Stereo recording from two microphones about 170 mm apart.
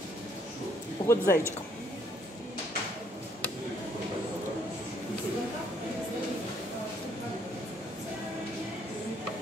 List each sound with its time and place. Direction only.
1.0 s speech: 15° left (ahead or behind)